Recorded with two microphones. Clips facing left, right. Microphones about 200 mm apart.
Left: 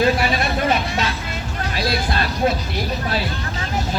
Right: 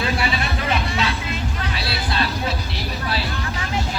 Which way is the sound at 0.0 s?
40° left (ahead or behind).